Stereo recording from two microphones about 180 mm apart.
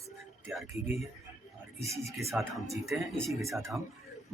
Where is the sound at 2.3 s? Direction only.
Centre (ahead or behind).